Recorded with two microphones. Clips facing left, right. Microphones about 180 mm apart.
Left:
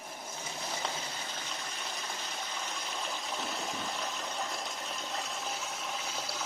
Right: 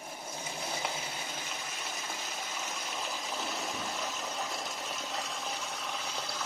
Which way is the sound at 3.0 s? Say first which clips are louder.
Even; centre (ahead or behind).